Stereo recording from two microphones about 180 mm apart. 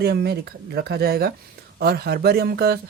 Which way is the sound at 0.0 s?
60° right (ahead or behind).